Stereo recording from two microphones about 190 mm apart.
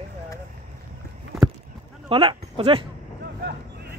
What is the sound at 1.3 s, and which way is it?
Clip-clop, centre (ahead or behind).